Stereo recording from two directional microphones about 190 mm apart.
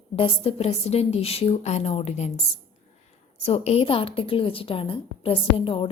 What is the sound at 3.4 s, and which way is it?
A woman's voice, 30° left (ahead or behind).